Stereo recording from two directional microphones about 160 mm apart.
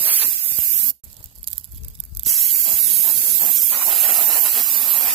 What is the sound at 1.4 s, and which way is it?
Crumpling, 35° right (ahead or behind).